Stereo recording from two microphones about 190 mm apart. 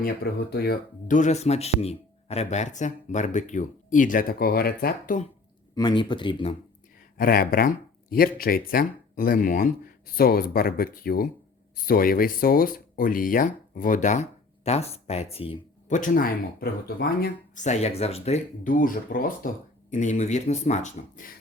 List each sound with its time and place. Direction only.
0.5 s speech: 55° left (ahead or behind)
5.7 s speech: 25° left (ahead or behind)
7.2 s speech: 50° left (ahead or behind); by 16.0 s 30° left (ahead or behind)
16.0 s speech: 50° left (ahead or behind)